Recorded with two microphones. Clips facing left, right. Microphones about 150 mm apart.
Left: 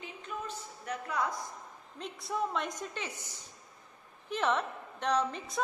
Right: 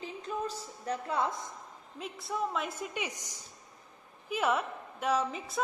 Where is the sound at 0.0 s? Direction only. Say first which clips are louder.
Right 5 dB; 35° right (ahead or behind).